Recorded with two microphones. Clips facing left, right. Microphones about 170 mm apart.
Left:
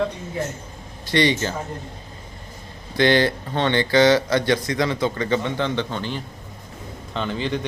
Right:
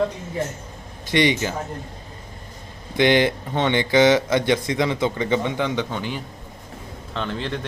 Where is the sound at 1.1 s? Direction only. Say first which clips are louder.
Even; 15° right (ahead or behind).